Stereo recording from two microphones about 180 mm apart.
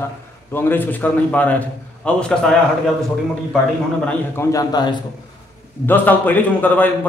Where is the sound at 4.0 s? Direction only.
15° left (ahead or behind).